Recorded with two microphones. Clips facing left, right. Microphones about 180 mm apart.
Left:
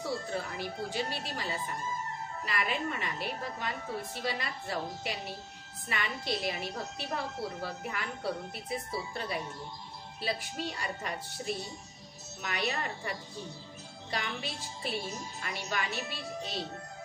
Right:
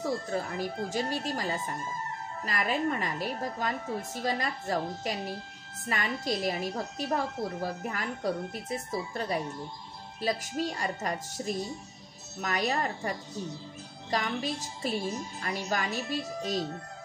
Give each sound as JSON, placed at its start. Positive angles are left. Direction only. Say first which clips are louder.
{"t": 0.6, "sound": "a woman's voice", "louder": "right 4 dB", "side_deg": -45}
{"t": 14.1, "sound": "a woman's voice", "louder": "right 6 dB", "side_deg": -40}